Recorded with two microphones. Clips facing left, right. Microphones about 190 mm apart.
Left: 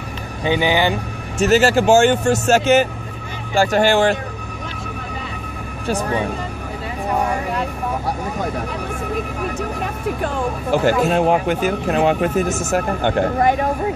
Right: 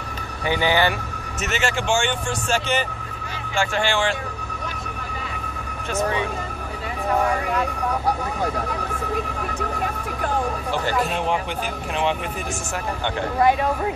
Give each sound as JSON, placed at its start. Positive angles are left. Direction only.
{"t": 0.5, "sound": "speech", "side_deg": 15}
{"t": 1.4, "sound": "speech", "side_deg": 40}
{"t": 5.9, "sound": "speech", "side_deg": 35}
{"t": 11.1, "sound": "speech", "side_deg": 45}